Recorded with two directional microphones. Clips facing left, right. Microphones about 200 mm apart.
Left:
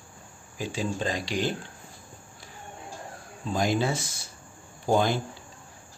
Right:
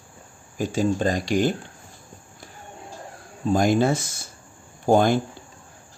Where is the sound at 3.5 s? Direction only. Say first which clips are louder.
Right 6 dB; 50° right (ahead or behind).